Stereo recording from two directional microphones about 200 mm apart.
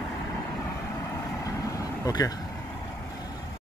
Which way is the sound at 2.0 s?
20° left (ahead or behind).